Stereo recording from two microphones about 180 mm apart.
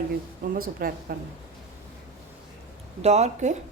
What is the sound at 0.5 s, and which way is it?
Speech, 55° right (ahead or behind).